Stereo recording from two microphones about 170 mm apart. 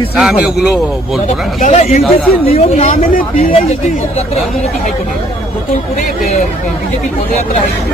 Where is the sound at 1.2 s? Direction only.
45° left (ahead or behind).